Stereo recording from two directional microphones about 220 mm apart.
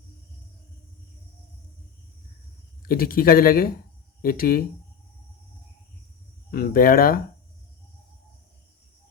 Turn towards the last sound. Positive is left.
turn(degrees=40)  # may be behind; listen again after turning